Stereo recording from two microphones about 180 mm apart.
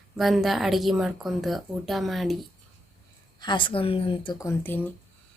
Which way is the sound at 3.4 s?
25° left (ahead or behind).